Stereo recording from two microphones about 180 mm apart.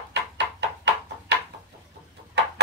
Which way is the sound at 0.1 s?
70° right (ahead or behind).